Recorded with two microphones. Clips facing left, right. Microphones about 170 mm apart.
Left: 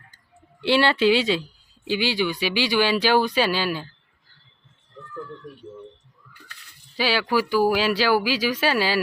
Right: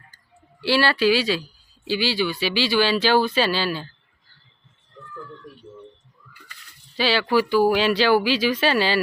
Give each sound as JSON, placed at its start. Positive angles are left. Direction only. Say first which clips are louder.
{"t": 0.6, "sound": "speech", "louder": "left 1 dB", "side_deg": 20}
{"t": 6.9, "sound": "speech", "louder": "right 2 dB", "side_deg": 10}